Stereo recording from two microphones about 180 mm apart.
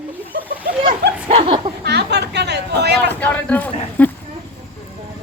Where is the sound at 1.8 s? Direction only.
65° right (ahead or behind).